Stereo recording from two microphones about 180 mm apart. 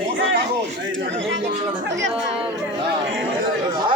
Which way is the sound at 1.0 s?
90° right.